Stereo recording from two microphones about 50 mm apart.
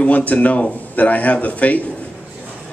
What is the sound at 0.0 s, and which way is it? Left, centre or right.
Speech, left.